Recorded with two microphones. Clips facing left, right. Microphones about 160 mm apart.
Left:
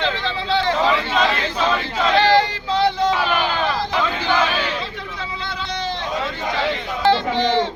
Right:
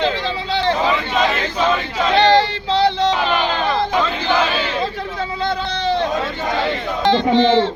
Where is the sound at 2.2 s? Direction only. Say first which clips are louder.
Right 2 dB; 30° right (ahead or behind).